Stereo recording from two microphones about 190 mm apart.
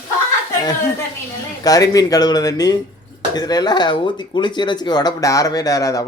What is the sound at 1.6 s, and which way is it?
Speech, 20° left (ahead or behind).